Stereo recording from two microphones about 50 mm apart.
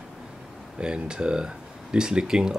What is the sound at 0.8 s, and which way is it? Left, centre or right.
Speech, centre.